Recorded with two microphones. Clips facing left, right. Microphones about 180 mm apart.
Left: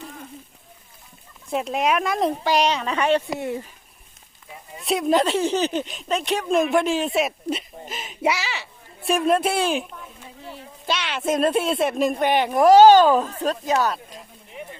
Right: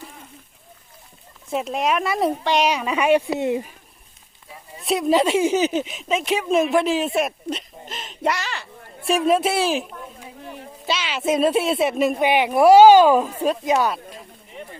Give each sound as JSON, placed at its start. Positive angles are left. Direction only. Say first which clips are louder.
{"t": 1.5, "sound": "a woman's voice", "louder": "even", "side_deg": 0}
{"t": 4.8, "sound": "speech", "louder": "right 1 dB", "side_deg": 0}
{"t": 7.4, "sound": "a sound", "louder": "left 2 dB", "side_deg": 5}
{"t": 9.0, "sound": "a woman's voice", "louder": "right 1 dB", "side_deg": 0}